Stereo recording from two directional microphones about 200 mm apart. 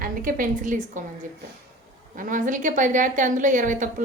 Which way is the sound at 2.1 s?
40° right (ahead or behind).